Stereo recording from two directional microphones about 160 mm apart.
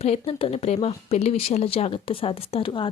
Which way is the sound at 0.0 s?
40° left (ahead or behind).